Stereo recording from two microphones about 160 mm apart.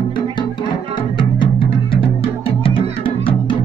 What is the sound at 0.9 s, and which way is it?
Music, 30° left (ahead or behind).